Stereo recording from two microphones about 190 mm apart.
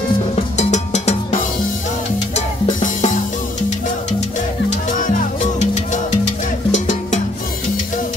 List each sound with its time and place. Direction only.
0.6 s music: 35° left (ahead or behind)
2.3 s drum kit: 40° left (ahead or behind)
6.7 s music: 40° left (ahead or behind)